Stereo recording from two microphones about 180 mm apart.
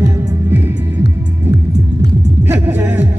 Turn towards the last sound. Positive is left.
turn(degrees=-10)  # may be behind; listen again after turning